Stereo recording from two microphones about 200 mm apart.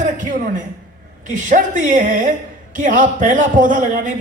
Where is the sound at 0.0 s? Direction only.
40° right (ahead or behind).